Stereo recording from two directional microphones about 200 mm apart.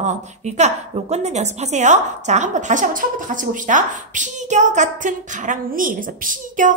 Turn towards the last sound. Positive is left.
turn(degrees=-40)  # may be behind; listen again after turning